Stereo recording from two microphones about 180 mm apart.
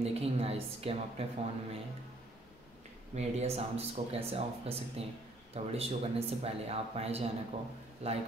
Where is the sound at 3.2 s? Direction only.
35° right (ahead or behind).